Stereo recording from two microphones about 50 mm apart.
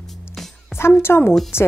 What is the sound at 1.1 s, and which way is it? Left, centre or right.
Speech, left.